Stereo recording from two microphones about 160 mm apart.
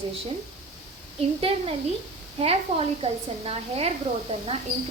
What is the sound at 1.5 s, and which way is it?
Speech, 40° right (ahead or behind).